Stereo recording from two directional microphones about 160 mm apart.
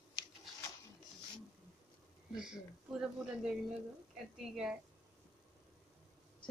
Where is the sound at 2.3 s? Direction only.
5° right (ahead or behind).